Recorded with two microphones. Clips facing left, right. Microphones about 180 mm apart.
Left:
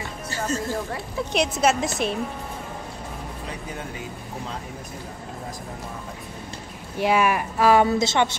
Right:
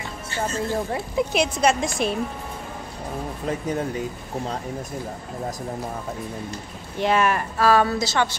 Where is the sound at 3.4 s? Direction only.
40° right (ahead or behind).